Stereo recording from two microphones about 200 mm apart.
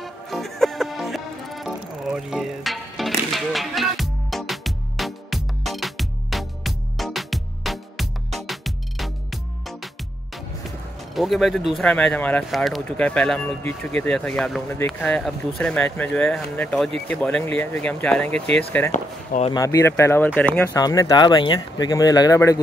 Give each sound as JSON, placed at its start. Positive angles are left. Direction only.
{"t": 0.0, "sound": "music", "side_deg": 0}
{"t": 11.1, "sound": "speech", "side_deg": 0}
{"t": 18.9, "sound": "speech", "side_deg": 35}
{"t": 19.5, "sound": "speech", "side_deg": 15}
{"t": 20.7, "sound": "speech", "side_deg": 20}